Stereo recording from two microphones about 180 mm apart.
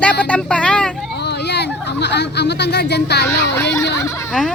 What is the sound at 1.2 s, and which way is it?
Speech, 70° left (ahead or behind).